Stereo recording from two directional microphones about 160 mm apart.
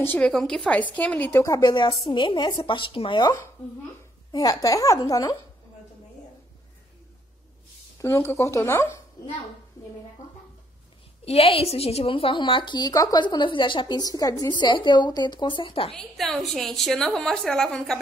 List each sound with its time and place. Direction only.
0.0 s a woman's voice: 10° left (ahead or behind)
8.0 s a woman's voice: 15° left (ahead or behind)
11.2 s a woman's voice: 40° left (ahead or behind)
15.9 s a woman's voice: 5° left (ahead or behind)